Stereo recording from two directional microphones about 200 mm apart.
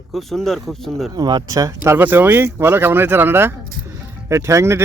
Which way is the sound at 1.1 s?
20° right (ahead or behind).